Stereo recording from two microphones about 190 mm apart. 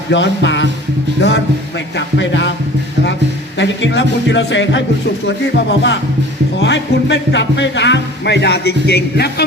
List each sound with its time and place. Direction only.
0.1 s speech: 70° left (ahead or behind)
2.0 s music: 70° left (ahead or behind)
3.6 s speech: 70° left (ahead or behind)